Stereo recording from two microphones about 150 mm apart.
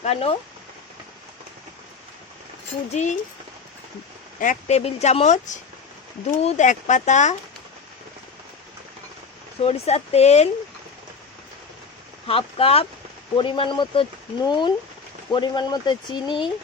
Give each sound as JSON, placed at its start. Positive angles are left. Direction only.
{"t": 0.0, "sound": "speech", "side_deg": 45}
{"t": 2.9, "sound": "speech", "side_deg": 50}
{"t": 4.4, "sound": "speech", "side_deg": 55}
{"t": 9.6, "sound": "speech", "side_deg": 45}
{"t": 12.3, "sound": "speech", "side_deg": 40}